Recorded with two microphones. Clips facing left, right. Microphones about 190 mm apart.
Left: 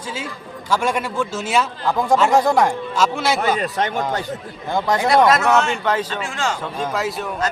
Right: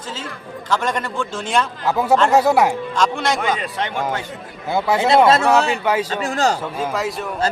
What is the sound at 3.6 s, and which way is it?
Speech, 45° left (ahead or behind).